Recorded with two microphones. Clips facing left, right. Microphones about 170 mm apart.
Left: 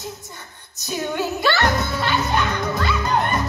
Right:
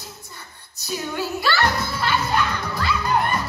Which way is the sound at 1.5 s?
20° left (ahead or behind).